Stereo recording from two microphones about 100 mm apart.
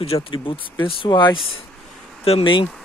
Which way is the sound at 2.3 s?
65° left (ahead or behind).